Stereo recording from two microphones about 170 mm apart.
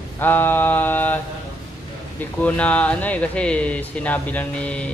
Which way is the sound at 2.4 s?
10° left (ahead or behind).